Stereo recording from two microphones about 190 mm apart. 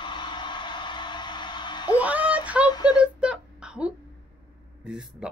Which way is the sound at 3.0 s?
5° right (ahead or behind).